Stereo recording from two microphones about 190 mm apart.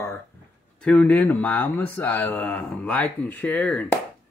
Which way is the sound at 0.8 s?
5° left (ahead or behind).